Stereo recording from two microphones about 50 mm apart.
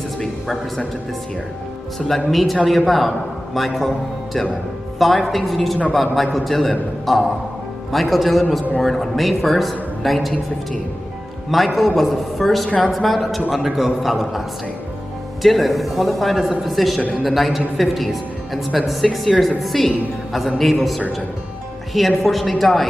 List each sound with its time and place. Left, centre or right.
0.2 s speech: centre
2.0 s a woman's voice: centre
11.5 s a woman's voice: centre
12.6 s a woman's voice: centre
12.9 s a woman's voice: centre
15.4 s a woman's voice: centre